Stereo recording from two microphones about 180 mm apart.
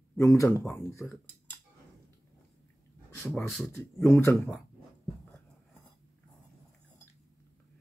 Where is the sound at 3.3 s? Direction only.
Centre (ahead or behind).